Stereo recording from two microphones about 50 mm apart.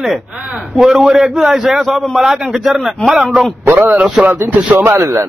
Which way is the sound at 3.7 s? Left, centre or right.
Right.